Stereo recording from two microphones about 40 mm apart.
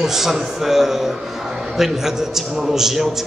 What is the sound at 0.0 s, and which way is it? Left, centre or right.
A man's voice, centre.